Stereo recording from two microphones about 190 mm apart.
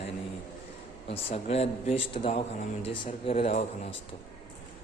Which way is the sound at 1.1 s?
30° left (ahead or behind).